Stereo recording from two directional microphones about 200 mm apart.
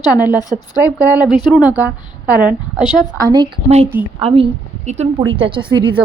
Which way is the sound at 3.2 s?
20° right (ahead or behind).